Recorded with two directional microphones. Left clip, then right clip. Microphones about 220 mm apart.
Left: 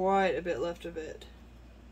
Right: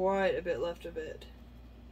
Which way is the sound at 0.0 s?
15° left (ahead or behind).